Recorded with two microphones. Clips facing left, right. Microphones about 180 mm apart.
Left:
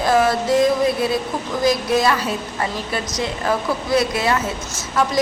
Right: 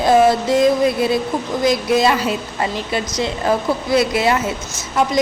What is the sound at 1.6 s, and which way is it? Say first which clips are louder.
Speech: right 2 dB; 20° right (ahead or behind).